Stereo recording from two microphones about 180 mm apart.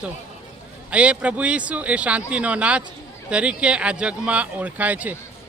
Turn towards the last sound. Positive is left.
turn(degrees=-10)  # may be behind; listen again after turning